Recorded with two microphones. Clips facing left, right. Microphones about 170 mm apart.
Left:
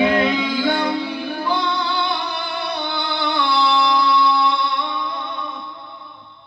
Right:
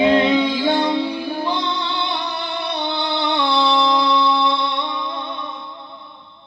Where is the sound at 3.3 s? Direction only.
25° right (ahead or behind).